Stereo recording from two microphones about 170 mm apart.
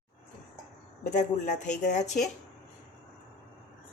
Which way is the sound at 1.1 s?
45° left (ahead or behind).